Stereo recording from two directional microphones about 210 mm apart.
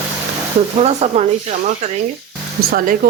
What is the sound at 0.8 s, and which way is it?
Speech, 30° right (ahead or behind).